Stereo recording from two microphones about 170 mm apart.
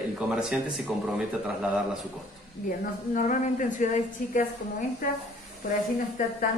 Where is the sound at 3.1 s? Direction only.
50° left (ahead or behind).